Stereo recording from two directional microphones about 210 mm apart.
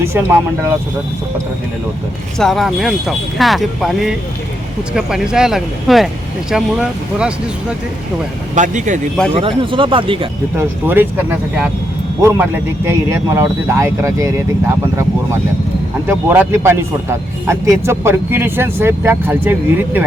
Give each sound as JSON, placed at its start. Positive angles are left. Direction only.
{"t": 0.0, "sound": "speech", "side_deg": -10}
{"t": 2.4, "sound": "speech", "side_deg": 0}
{"t": 8.5, "sound": "speech", "side_deg": -35}
{"t": 9.3, "sound": "speech", "side_deg": -25}
{"t": 10.6, "sound": "speech", "side_deg": -10}
{"t": 16.0, "sound": "speech", "side_deg": -10}